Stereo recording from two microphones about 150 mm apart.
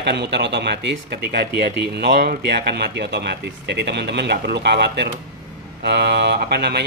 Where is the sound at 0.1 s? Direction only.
90° right.